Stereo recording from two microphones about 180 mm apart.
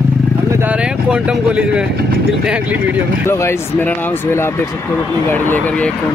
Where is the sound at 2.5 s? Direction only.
5° right (ahead or behind).